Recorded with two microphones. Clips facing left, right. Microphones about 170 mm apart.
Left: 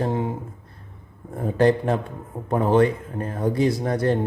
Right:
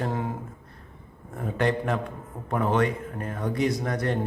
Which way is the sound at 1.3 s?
35° left (ahead or behind).